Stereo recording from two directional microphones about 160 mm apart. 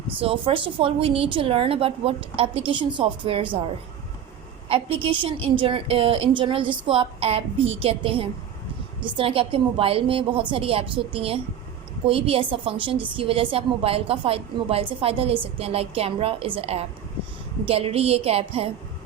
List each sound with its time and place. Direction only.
0.2 s a woman's voice: 35° right (ahead or behind)
5.0 s a woman's voice: 30° right (ahead or behind)